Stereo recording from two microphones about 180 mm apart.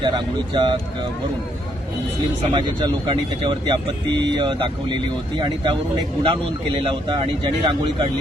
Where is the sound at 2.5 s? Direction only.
25° right (ahead or behind).